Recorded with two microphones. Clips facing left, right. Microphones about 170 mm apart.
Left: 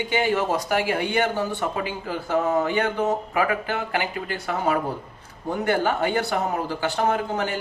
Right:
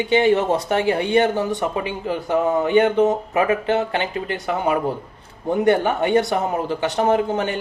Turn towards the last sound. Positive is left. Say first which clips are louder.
# right 5 dB
turn(degrees=-20)  # may be behind; listen again after turning